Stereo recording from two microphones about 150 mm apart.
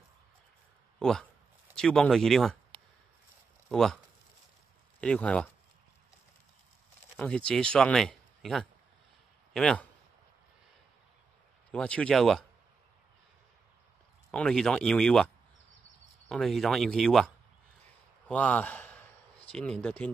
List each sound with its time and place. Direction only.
0.9 s speech: 5° left (ahead or behind)
2.7 s a sound: 40° right (ahead or behind)
3.6 s speech: 5° left (ahead or behind)
5.0 s speech: 5° left (ahead or behind)
7.2 s speech: 10° left (ahead or behind)
11.7 s speech: 10° left (ahead or behind)
14.3 s speech: 5° left (ahead or behind)
16.3 s speech: centre (ahead or behind)
18.3 s a sound: 10° left (ahead or behind)
19.5 s speech: 5° left (ahead or behind)